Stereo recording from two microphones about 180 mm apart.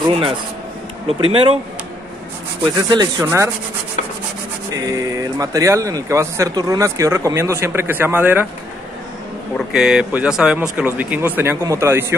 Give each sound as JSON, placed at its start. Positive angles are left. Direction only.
{"t": 0.0, "sound": "speech", "side_deg": -30}
{"t": 2.9, "sound": "speech", "side_deg": -20}
{"t": 4.7, "sound": "speech", "side_deg": -20}
{"t": 9.7, "sound": "speech", "side_deg": -5}